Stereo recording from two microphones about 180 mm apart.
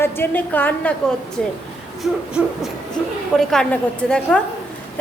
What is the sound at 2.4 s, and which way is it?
A woman's voice, 5° right (ahead or behind).